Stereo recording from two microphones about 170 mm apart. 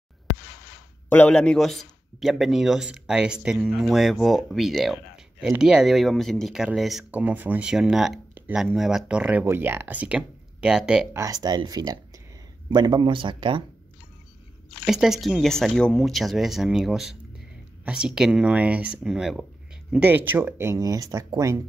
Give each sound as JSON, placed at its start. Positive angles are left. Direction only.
{"t": 1.0, "sound": "speech", "side_deg": 10}
{"t": 11.1, "sound": "speech", "side_deg": -20}
{"t": 14.9, "sound": "speech", "side_deg": 0}